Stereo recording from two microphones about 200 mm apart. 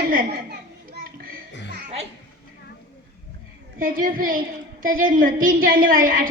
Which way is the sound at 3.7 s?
45° right (ahead or behind).